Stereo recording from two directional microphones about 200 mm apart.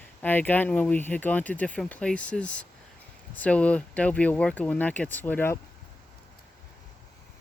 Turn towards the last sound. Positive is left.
turn(degrees=10)  # may be behind; listen again after turning